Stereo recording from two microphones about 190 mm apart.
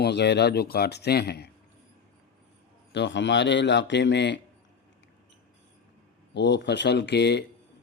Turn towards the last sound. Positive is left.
turn(degrees=65)  # may be behind; listen again after turning